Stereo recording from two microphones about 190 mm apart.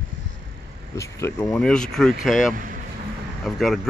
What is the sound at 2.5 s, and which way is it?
Speech, 45° right (ahead or behind).